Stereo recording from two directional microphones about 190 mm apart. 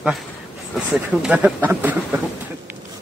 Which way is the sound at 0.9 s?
5° right (ahead or behind).